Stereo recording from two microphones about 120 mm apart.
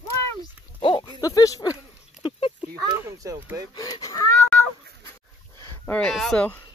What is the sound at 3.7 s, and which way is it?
Speech, 30° left (ahead or behind).